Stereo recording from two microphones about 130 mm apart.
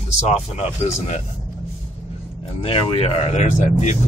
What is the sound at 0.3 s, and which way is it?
Speech, 55° left (ahead or behind).